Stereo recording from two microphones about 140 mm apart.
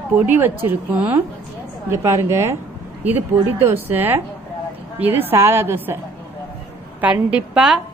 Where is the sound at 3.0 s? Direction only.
15° right (ahead or behind).